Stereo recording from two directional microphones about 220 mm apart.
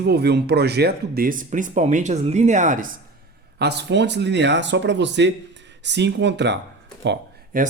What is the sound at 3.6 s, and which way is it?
Speech, 50° right (ahead or behind).